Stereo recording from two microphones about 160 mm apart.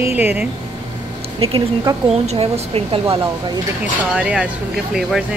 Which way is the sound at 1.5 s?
30° right (ahead or behind).